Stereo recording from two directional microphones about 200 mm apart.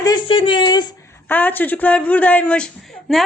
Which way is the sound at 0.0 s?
20° left (ahead or behind).